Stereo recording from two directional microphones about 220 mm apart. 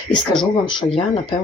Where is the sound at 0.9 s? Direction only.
25° left (ahead or behind).